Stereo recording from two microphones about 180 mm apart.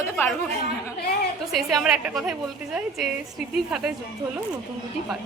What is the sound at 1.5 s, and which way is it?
Speech, centre (ahead or behind).